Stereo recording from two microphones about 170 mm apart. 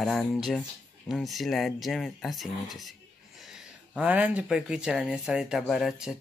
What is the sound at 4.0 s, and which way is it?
Speech, 10° right (ahead or behind).